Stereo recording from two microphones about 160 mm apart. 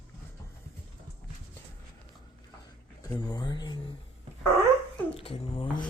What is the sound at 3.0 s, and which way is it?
Speech, 25° left (ahead or behind).